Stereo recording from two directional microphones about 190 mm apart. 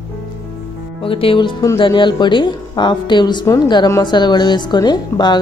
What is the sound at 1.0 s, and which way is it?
A woman's voice, 30° left (ahead or behind).